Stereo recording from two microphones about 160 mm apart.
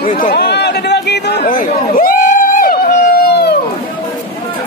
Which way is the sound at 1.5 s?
60° left (ahead or behind).